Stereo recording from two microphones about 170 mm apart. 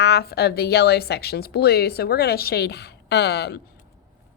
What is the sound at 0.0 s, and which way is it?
A woman's voice, 70° left (ahead or behind).